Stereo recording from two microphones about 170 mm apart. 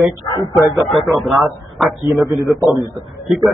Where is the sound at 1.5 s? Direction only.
Centre (ahead or behind).